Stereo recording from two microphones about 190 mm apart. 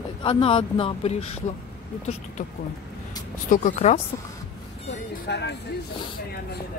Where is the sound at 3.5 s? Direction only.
45° left (ahead or behind).